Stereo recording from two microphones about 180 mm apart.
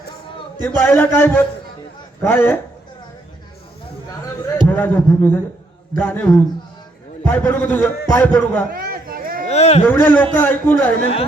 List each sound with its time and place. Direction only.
0.6 s a man's voice: 10° left (ahead or behind)
4.6 s a man's voice: 10° left (ahead or behind)
8.7 s a sound: 55° right (ahead or behind)
9.5 s speech: 35° left (ahead or behind)
9.8 s a man's voice: 10° left (ahead or behind)